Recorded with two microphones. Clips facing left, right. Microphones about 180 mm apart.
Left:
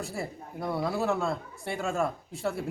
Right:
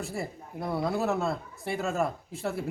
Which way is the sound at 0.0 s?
Centre (ahead or behind).